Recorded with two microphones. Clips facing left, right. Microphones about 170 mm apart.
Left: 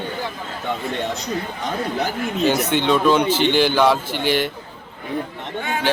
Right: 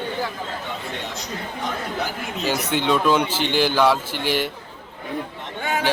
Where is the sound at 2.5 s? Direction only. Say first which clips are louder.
Left 3 dB; 5° right (ahead or behind).